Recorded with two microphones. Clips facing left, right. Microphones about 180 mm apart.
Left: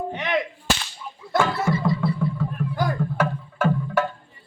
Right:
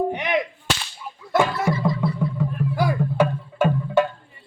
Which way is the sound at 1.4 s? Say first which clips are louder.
Right 1 dB; 15° right (ahead or behind).